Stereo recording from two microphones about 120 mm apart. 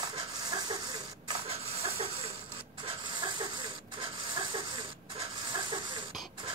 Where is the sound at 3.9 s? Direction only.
40° right (ahead or behind).